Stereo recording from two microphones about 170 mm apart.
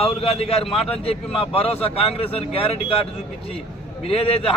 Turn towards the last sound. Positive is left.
turn(degrees=35)  # may be behind; listen again after turning